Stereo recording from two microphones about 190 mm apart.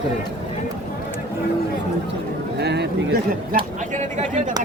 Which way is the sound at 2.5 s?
60° right (ahead or behind).